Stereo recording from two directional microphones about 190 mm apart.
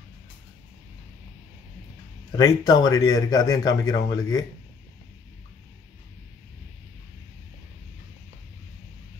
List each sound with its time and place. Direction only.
2.3 s a man's voice: 20° left (ahead or behind)